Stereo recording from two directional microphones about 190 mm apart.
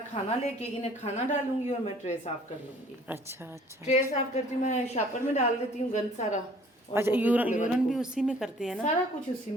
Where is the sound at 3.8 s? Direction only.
35° left (ahead or behind).